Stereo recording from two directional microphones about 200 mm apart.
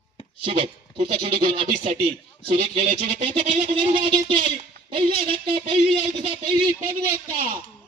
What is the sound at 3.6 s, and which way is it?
A man's voice, 25° right (ahead or behind).